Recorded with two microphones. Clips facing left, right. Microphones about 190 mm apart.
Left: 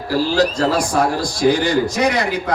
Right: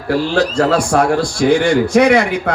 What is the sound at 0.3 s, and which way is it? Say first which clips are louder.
A man's voice: right 3 dB; 55° right (ahead or behind).